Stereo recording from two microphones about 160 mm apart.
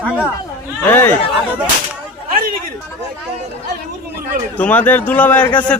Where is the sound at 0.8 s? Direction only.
15° left (ahead or behind).